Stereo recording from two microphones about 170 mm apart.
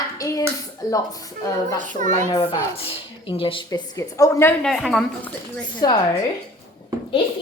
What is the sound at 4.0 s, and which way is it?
Speech, 20° left (ahead or behind).